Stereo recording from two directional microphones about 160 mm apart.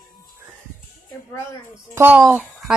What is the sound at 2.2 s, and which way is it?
Speech, centre (ahead or behind).